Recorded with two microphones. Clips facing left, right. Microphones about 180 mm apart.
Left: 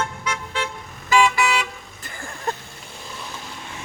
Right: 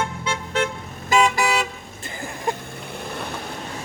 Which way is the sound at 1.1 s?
40° right (ahead or behind).